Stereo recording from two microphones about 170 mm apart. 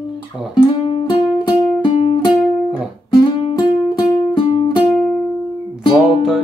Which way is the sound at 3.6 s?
30° left (ahead or behind).